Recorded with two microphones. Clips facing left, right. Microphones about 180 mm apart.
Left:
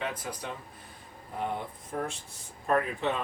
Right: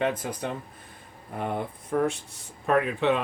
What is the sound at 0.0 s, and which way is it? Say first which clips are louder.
Speech: right 8 dB; 50° right (ahead or behind).